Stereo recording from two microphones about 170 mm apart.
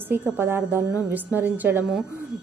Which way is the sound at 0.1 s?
15° right (ahead or behind).